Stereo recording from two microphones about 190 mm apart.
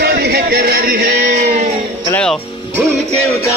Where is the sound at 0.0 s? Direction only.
60° right (ahead or behind).